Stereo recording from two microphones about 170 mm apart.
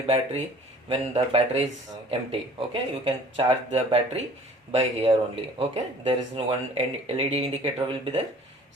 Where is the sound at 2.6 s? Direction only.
30° right (ahead or behind).